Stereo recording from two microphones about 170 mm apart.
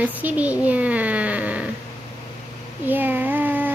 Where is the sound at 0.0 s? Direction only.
10° right (ahead or behind).